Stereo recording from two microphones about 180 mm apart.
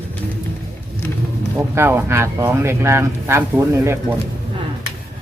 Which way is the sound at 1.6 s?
15° right (ahead or behind).